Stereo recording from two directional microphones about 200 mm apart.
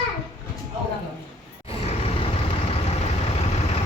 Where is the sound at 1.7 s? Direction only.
30° left (ahead or behind).